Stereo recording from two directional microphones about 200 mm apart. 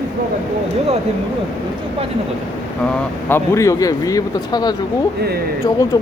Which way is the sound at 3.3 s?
15° left (ahead or behind).